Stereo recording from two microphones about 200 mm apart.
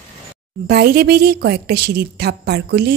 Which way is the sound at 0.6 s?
50° right (ahead or behind).